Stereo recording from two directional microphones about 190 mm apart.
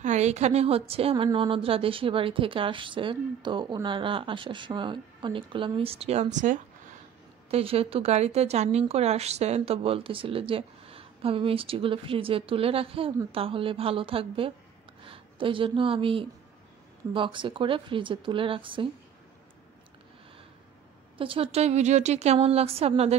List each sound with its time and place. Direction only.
0.0 s a woman's voice: 35° right (ahead or behind)
21.2 s a woman's voice: 30° right (ahead or behind)